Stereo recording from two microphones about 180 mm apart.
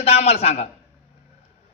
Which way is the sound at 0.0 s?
35° left (ahead or behind).